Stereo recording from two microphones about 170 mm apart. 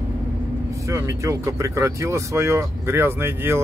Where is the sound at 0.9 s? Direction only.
20° right (ahead or behind).